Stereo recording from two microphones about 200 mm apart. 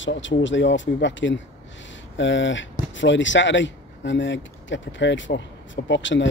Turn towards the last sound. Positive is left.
turn(degrees=65)  # may be behind; listen again after turning